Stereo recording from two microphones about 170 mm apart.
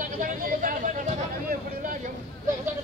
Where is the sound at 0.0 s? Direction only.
55° right (ahead or behind).